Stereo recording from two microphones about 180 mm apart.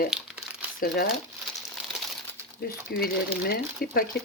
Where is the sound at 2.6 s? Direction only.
55° left (ahead or behind).